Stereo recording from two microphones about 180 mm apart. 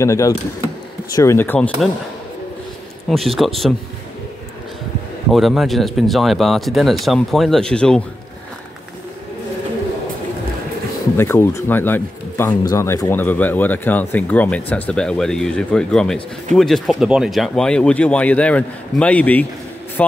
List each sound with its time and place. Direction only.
0.0 s speech: 15° left (ahead or behind)
3.1 s speech: centre (ahead or behind)
5.3 s speech: centre (ahead or behind)
11.1 s speech: 15° left (ahead or behind)